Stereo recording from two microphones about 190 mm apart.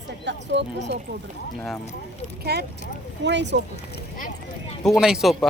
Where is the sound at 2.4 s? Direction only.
55° right (ahead or behind).